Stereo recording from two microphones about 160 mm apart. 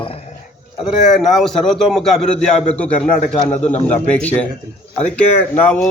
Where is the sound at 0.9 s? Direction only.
Centre (ahead or behind).